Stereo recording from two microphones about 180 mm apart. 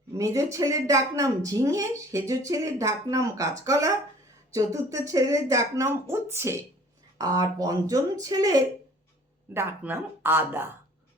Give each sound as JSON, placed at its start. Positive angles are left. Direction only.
{"t": 0.2, "sound": "speech", "side_deg": -15}